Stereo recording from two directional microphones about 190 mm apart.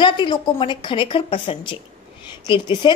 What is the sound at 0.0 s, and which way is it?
A woman's voice, 25° left (ahead or behind).